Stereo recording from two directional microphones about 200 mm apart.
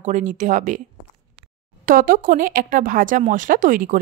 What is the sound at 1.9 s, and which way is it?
Speech, 45° right (ahead or behind).